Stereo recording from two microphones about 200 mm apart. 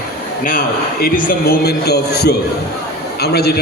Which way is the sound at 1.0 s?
45° left (ahead or behind).